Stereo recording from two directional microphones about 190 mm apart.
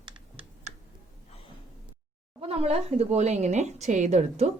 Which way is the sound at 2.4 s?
30° right (ahead or behind).